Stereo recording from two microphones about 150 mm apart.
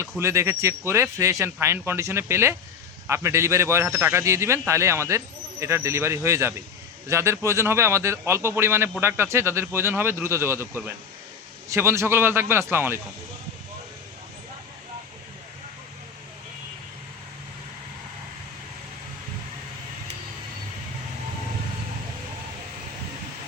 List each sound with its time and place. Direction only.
0.0 s a man's voice: 20° right (ahead or behind)